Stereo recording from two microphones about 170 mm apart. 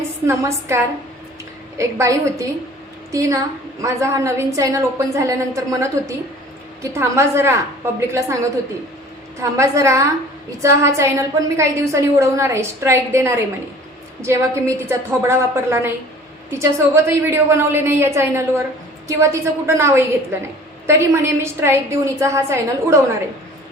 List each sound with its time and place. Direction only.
0.3 s a woman's voice: 15° right (ahead or behind)
1.8 s a woman's voice: 15° right (ahead or behind)